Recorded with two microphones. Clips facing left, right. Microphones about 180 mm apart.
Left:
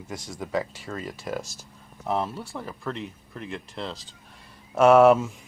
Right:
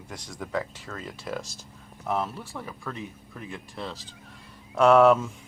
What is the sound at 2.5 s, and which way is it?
Speech, 10° left (ahead or behind).